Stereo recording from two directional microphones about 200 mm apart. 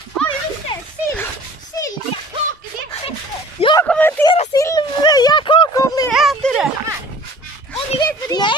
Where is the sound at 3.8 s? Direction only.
10° left (ahead or behind).